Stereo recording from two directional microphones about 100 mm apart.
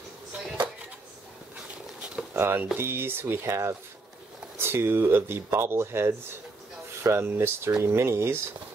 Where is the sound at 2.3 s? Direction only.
20° right (ahead or behind).